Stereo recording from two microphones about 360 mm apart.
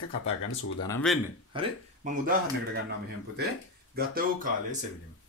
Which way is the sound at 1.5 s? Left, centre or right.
Right.